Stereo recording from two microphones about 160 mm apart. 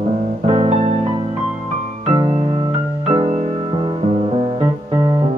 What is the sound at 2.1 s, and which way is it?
Keyboard, 40° right (ahead or behind).